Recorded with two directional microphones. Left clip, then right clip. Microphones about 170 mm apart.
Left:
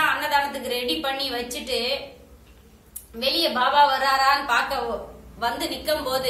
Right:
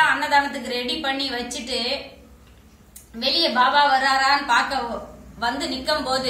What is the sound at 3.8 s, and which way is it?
A woman's voice, 25° left (ahead or behind).